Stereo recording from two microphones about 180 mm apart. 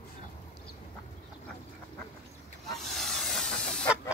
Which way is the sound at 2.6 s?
Centre (ahead or behind).